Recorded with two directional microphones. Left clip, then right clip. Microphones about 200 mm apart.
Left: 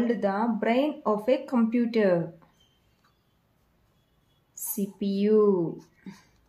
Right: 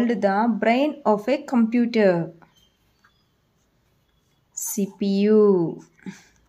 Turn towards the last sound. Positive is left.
turn(degrees=-40)  # may be behind; listen again after turning